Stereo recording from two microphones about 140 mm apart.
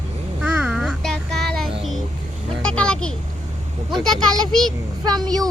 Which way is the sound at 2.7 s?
5° left (ahead or behind).